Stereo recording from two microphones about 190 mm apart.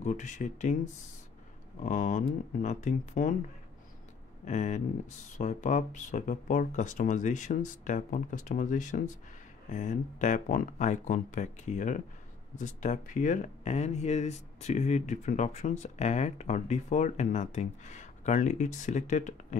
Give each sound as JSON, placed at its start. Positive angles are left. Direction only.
{"t": 0.0, "sound": "speech", "side_deg": 40}
{"t": 1.8, "sound": "speech", "side_deg": 40}
{"t": 4.5, "sound": "speech", "side_deg": 40}